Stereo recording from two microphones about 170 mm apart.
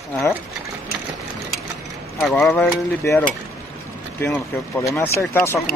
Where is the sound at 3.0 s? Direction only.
15° left (ahead or behind).